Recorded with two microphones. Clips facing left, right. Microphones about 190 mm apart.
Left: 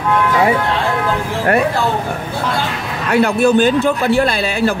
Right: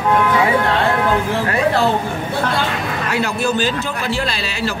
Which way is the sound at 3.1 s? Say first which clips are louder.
Left 9 dB; 55° left (ahead or behind).